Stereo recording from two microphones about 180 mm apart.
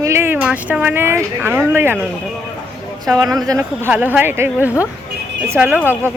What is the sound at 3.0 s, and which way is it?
A woman's voice, 20° right (ahead or behind).